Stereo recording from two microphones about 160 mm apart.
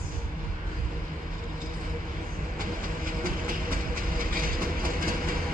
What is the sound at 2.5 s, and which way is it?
Train, 60° right (ahead or behind).